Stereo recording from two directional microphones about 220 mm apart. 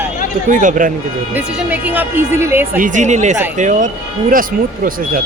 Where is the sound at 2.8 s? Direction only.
35° right (ahead or behind).